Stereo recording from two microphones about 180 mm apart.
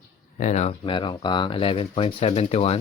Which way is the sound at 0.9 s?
25° left (ahead or behind).